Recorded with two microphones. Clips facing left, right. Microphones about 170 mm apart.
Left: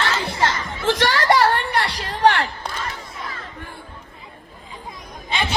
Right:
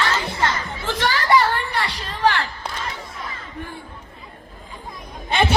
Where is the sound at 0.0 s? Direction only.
75° left (ahead or behind).